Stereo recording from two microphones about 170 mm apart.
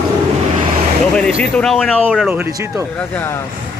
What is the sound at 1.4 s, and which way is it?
Speech, 5° left (ahead or behind).